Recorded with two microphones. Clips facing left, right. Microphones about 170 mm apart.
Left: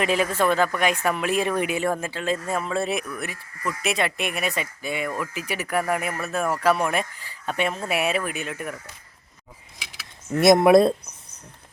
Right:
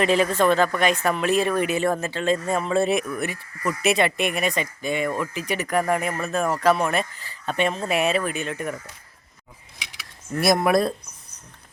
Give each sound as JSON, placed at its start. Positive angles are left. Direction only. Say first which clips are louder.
{"t": 0.0, "sound": "speech", "louder": "right 3 dB", "side_deg": 10}
{"t": 9.7, "sound": "a sound", "louder": "right 2 dB", "side_deg": 0}
{"t": 10.3, "sound": "speech", "louder": "left 5 dB", "side_deg": 20}